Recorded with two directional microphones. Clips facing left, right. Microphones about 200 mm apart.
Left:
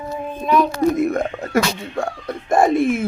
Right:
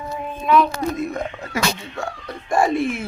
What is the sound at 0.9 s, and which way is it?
Speech, 50° left (ahead or behind).